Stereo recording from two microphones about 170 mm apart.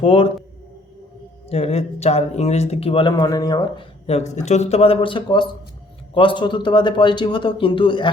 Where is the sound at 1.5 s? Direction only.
40° left (ahead or behind).